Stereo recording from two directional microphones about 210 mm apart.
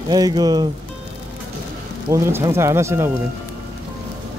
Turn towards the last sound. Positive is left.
turn(degrees=-10)  # may be behind; listen again after turning